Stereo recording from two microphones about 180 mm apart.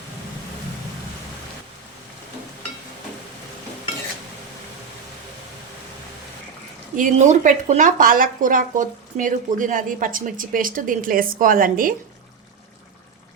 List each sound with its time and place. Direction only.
6.9 s speech: 45° right (ahead or behind)